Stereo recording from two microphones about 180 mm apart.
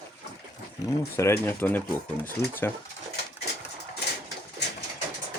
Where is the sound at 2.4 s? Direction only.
65° left (ahead or behind).